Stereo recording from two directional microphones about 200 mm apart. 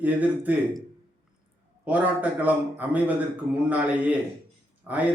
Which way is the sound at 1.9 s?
10° right (ahead or behind).